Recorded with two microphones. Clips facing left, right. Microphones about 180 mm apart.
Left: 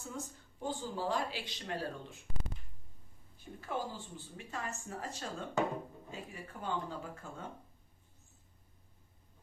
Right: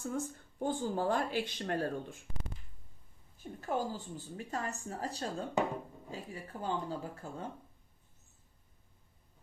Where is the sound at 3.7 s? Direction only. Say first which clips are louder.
Right 4 dB; 40° right (ahead or behind).